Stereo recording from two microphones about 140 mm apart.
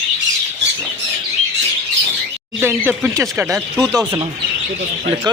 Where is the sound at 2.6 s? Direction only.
15° right (ahead or behind).